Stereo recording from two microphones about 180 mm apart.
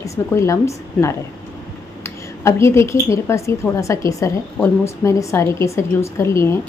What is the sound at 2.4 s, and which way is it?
A woman's voice, 15° left (ahead or behind).